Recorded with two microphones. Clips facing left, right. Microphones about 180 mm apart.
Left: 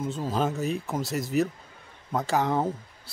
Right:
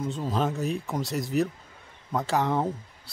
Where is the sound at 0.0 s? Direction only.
Centre (ahead or behind).